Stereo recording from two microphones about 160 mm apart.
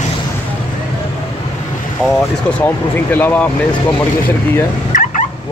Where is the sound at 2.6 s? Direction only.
10° left (ahead or behind).